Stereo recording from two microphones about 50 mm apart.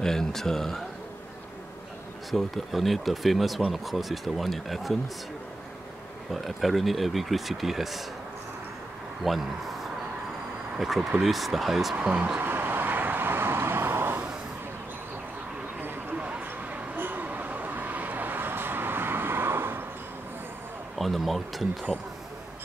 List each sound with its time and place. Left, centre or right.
0.0 s speech: centre
2.3 s speech: centre
6.3 s speech: centre
9.2 s speech: centre
10.8 s speech: centre
12.4 s vehicle: right
16.2 s a sound: right
17.0 s vehicle: right
21.0 s a sound: centre
21.9 s speech: centre